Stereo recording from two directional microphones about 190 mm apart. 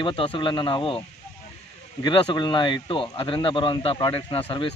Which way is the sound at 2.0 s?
25° left (ahead or behind).